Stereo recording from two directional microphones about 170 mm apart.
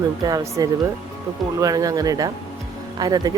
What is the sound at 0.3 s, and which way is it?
Speech, 20° right (ahead or behind).